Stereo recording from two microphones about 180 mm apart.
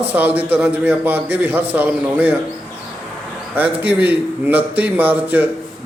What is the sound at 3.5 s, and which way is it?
A man's voice, 10° right (ahead or behind).